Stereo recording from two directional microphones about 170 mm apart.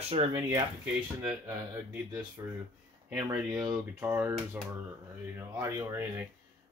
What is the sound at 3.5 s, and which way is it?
Speech, 20° right (ahead or behind).